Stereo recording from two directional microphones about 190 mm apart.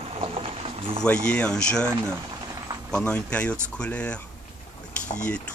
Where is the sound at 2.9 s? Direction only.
5° left (ahead or behind).